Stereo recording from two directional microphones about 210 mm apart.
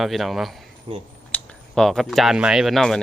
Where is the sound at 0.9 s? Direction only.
25° right (ahead or behind).